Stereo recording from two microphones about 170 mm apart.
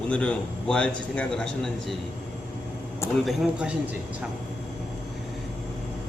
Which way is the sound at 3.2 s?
5° right (ahead or behind).